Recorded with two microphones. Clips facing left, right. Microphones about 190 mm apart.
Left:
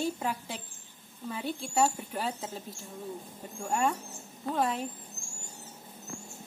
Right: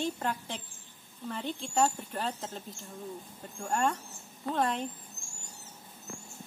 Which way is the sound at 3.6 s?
5° left (ahead or behind).